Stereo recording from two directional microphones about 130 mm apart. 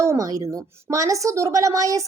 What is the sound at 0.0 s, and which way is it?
A woman's voice, 25° right (ahead or behind).